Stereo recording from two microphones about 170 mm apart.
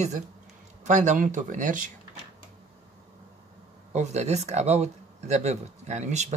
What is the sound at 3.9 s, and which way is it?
Speech, 40° right (ahead or behind).